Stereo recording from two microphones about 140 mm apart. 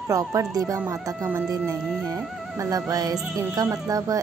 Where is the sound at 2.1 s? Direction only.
25° right (ahead or behind).